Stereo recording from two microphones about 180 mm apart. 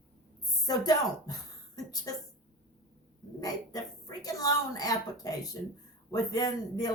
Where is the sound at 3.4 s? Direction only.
20° left (ahead or behind).